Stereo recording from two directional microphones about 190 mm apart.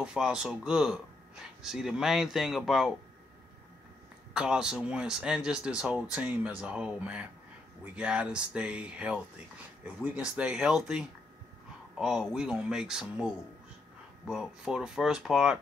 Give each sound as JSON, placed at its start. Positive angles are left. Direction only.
{"t": 0.0, "sound": "speech", "side_deg": -5}
{"t": 4.3, "sound": "speech", "side_deg": -5}